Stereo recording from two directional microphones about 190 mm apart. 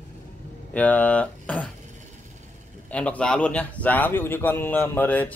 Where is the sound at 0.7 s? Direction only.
10° left (ahead or behind).